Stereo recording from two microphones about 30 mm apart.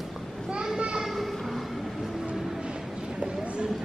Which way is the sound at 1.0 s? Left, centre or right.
Centre.